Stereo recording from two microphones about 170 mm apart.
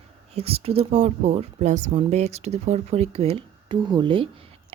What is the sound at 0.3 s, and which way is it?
Speech, 35° right (ahead or behind).